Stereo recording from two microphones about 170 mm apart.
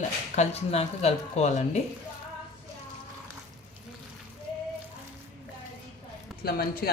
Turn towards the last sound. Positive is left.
turn(degrees=60)  # may be behind; listen again after turning